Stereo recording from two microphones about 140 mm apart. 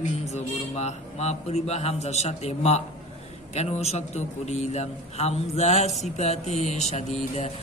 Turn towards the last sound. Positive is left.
turn(degrees=50)  # may be behind; listen again after turning